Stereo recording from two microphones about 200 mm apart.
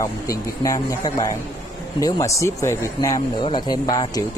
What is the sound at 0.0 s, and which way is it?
Speech, 15° left (ahead or behind).